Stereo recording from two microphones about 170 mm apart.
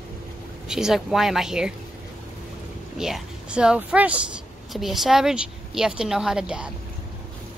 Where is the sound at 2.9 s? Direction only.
5° right (ahead or behind).